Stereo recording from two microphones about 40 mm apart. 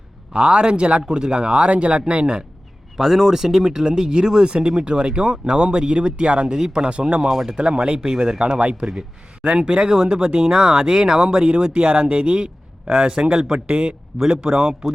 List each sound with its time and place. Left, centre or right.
0.3 s speech: right
3.0 s speech: centre